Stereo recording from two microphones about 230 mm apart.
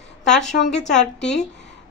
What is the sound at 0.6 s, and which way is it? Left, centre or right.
Speech, left.